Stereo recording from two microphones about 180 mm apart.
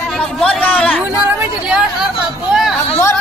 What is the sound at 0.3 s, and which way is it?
Chatter, 5° left (ahead or behind).